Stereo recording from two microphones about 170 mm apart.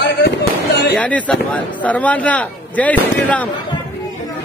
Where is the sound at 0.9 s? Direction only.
5° left (ahead or behind).